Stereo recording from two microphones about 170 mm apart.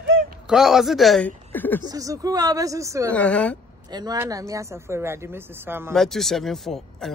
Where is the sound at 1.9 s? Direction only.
20° right (ahead or behind).